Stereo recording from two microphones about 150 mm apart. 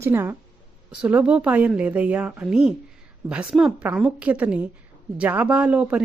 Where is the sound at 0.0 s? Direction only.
15° right (ahead or behind).